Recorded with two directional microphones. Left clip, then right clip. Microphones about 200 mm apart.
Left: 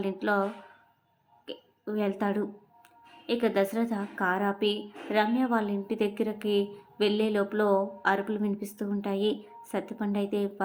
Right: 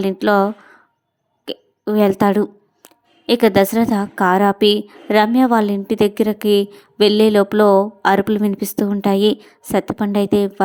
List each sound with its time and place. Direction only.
0.0 s speech: 45° right (ahead or behind)
1.5 s speech: 50° right (ahead or behind)